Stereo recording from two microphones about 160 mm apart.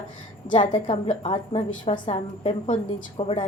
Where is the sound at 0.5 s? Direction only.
30° left (ahead or behind).